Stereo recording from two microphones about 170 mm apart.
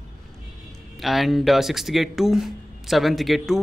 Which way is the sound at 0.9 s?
Centre (ahead or behind).